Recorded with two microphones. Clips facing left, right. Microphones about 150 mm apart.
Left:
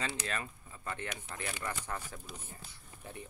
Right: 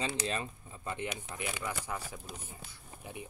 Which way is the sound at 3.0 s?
10° right (ahead or behind).